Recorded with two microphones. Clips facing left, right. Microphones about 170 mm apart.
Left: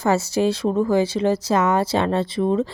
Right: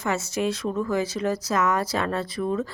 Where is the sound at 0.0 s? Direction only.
35° left (ahead or behind).